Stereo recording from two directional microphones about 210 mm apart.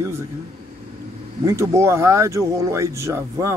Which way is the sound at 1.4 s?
15° right (ahead or behind).